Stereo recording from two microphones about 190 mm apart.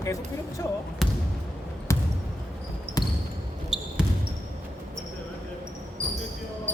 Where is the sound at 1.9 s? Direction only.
15° left (ahead or behind).